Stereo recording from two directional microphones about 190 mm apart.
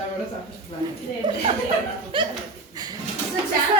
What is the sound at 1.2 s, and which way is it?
Speech, 25° right (ahead or behind).